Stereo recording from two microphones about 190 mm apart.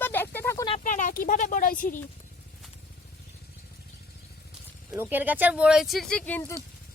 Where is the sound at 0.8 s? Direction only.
45° left (ahead or behind).